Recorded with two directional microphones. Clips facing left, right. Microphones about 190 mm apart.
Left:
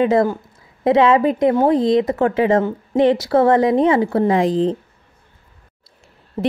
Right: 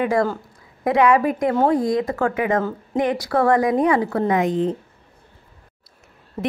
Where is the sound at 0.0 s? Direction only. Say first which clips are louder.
Left 4 dB; 20° left (ahead or behind).